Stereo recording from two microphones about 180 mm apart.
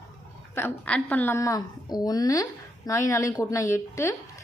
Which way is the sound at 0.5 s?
10° left (ahead or behind).